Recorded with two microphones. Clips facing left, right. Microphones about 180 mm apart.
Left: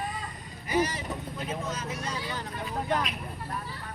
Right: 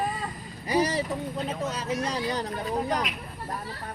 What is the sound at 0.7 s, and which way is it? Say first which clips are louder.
Speech: right 3 dB; 35° right (ahead or behind).